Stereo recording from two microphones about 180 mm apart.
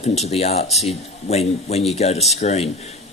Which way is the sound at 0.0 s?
35° left (ahead or behind).